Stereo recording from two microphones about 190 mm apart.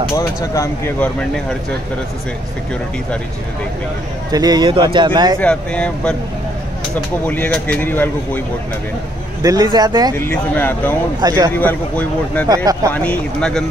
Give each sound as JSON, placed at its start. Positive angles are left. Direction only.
{"t": 0.1, "sound": "speech", "side_deg": 15}
{"t": 4.3, "sound": "speech", "side_deg": -20}
{"t": 5.4, "sound": "speech", "side_deg": 5}
{"t": 7.2, "sound": "speech", "side_deg": 5}
{"t": 9.4, "sound": "speech", "side_deg": -20}
{"t": 10.1, "sound": "speech", "side_deg": 10}
{"t": 11.1, "sound": "speech", "side_deg": -20}
{"t": 11.5, "sound": "speech", "side_deg": 10}
{"t": 12.4, "sound": "speech", "side_deg": -20}
{"t": 12.9, "sound": "speech", "side_deg": 5}